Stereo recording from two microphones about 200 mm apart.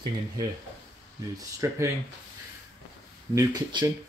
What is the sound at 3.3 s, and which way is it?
Speech, 20° right (ahead or behind).